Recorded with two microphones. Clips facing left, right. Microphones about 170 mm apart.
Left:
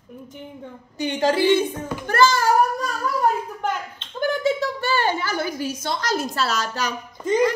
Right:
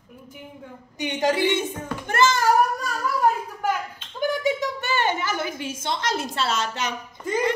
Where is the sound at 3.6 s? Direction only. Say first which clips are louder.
Right 1 dB; 10° right (ahead or behind).